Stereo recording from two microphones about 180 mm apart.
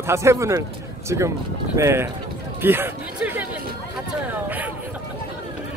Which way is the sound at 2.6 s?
10° right (ahead or behind).